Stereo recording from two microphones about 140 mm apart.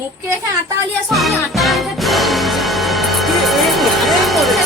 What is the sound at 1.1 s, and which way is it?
Music, centre (ahead or behind).